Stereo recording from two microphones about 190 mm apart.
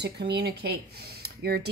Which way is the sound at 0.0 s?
60° right (ahead or behind).